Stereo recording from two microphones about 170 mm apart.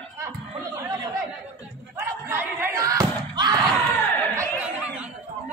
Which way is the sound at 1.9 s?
15° right (ahead or behind).